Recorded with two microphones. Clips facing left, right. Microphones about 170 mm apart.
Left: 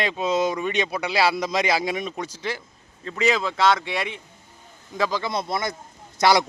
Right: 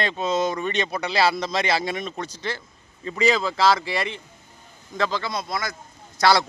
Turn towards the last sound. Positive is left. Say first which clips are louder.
# left 1 dB
turn(degrees=15)  # may be behind; listen again after turning